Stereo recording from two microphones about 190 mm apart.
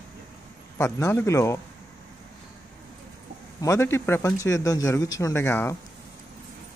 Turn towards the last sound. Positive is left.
turn(degrees=15)  # may be behind; listen again after turning